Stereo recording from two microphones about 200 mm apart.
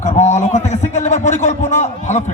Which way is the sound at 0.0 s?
35° left (ahead or behind).